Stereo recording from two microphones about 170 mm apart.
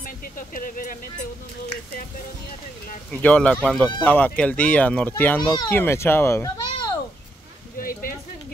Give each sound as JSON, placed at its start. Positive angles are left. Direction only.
{"t": 0.0, "sound": "speech", "side_deg": 55}
{"t": 3.1, "sound": "a child's voice", "side_deg": 5}
{"t": 7.8, "sound": "speech", "side_deg": 55}